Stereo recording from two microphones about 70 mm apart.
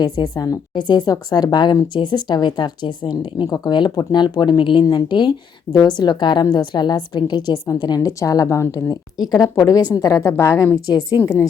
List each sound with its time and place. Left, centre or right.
0.0 s speech: left
0.9 s a woman's voice: left
5.7 s a woman's voice: left
10.2 s a woman's voice: left